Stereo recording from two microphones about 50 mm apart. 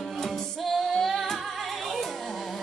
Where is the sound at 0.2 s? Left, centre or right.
Centre.